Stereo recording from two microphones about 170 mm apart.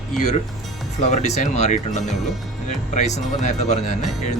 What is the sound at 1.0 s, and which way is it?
Speech, 40° left (ahead or behind).